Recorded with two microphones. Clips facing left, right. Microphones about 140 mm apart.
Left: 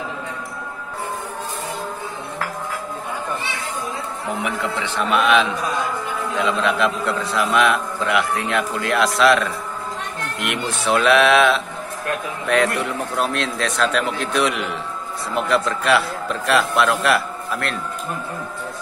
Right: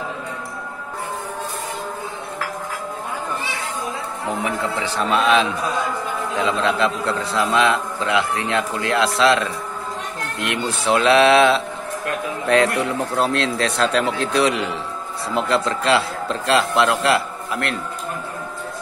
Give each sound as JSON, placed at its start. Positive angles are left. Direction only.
{"t": 4.4, "sound": "a man's voice", "side_deg": -30}
{"t": 10.5, "sound": "a man's voice", "side_deg": -30}